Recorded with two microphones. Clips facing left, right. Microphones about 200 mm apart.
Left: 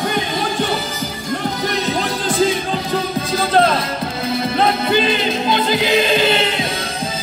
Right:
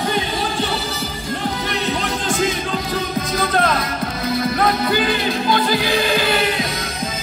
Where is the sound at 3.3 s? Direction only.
30° left (ahead or behind).